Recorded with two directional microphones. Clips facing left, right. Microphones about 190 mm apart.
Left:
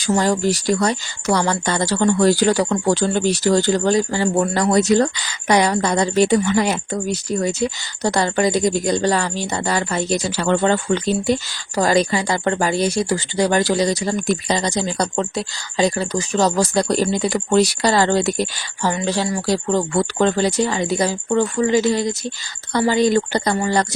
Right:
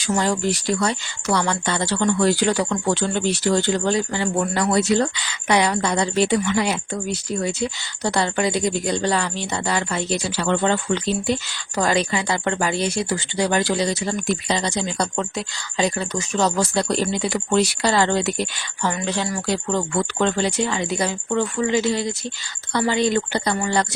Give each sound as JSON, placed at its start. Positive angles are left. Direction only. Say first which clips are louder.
{"t": 0.2, "sound": "speech", "louder": "left 3 dB", "side_deg": 40}